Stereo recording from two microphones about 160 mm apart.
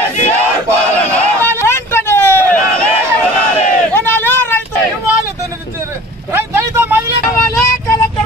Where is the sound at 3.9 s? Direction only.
15° left (ahead or behind).